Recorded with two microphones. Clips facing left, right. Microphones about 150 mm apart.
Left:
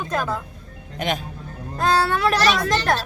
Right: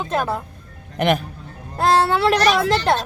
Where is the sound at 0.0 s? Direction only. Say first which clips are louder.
Right 3 dB; 25° right (ahead or behind).